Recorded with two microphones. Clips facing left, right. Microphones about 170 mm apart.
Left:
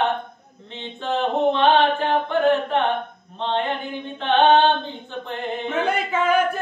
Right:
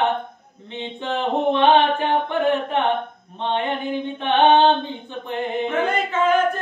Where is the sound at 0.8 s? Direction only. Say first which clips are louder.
Left 1 dB; 15° right (ahead or behind).